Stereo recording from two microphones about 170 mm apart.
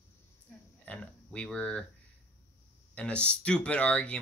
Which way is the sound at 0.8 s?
5° left (ahead or behind).